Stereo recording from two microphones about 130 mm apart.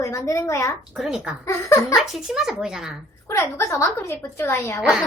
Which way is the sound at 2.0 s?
5° right (ahead or behind).